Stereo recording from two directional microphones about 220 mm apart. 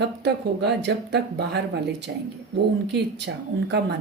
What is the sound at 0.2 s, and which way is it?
Speech, 50° right (ahead or behind).